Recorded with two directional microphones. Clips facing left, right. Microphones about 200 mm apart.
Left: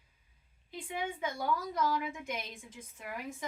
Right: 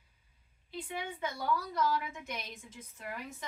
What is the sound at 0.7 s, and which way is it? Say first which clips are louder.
A woman's voice: left 2 dB; 15° left (ahead or behind).